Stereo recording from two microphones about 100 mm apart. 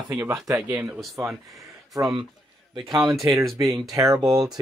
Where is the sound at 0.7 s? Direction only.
25° right (ahead or behind).